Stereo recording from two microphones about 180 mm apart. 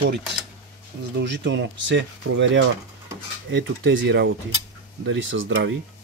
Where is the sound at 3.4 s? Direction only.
90° right.